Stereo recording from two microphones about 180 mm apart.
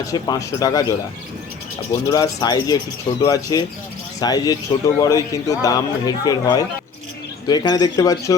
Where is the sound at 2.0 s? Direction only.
20° left (ahead or behind).